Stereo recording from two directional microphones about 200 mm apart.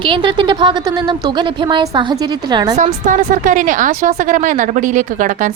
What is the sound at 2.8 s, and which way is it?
Speech, 40° right (ahead or behind).